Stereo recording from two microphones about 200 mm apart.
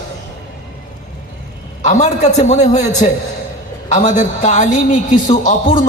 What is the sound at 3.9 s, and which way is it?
A man's voice, 40° left (ahead or behind).